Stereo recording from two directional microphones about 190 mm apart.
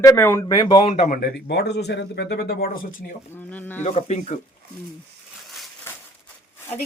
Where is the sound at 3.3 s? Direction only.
10° left (ahead or behind).